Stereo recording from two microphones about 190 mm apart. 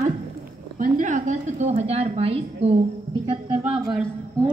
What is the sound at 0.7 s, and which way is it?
A woman's voice, 45° right (ahead or behind).